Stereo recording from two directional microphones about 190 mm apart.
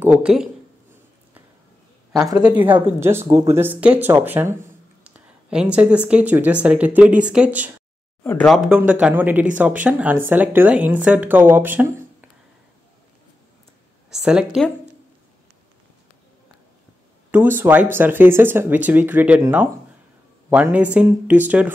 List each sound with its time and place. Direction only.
0.0 s speech: 5° right (ahead or behind)
2.1 s speech: 20° right (ahead or behind)
8.2 s speech: 10° left (ahead or behind)
8.5 s speech: centre (ahead or behind)
14.1 s speech: 5° right (ahead or behind)
17.3 s speech: 10° right (ahead or behind)
20.4 s speech: 10° right (ahead or behind)